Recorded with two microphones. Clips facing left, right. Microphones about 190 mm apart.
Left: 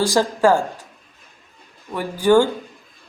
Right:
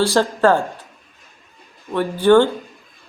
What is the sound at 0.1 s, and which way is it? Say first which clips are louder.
Speech: right 1 dB; 10° left (ahead or behind).